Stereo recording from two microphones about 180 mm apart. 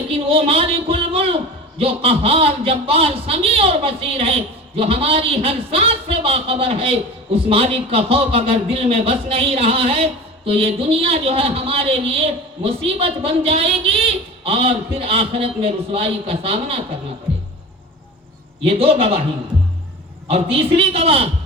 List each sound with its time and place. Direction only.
0.1 s a sound: 30° right (ahead or behind)
1.8 s a man's voice: 30° right (ahead or behind)
18.6 s a man's voice: 30° right (ahead or behind)
20.2 s a man's voice: 30° right (ahead or behind)